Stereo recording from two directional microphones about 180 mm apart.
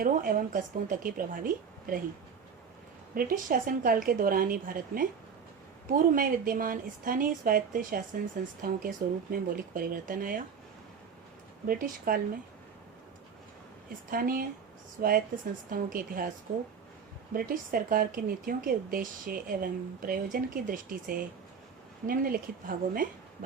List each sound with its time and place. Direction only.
0.0 s a woman's voice: 50° right (ahead or behind)
3.2 s a woman's voice: 50° right (ahead or behind)
11.7 s a woman's voice: 55° right (ahead or behind)
14.1 s a woman's voice: 55° right (ahead or behind)
17.3 s a woman's voice: 55° right (ahead or behind)